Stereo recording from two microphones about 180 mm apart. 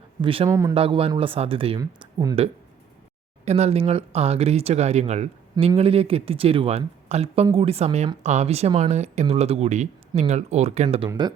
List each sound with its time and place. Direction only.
0.2 s speech: 30° right (ahead or behind)